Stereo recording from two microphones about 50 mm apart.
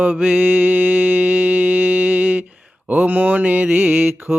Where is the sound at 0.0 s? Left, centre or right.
Right.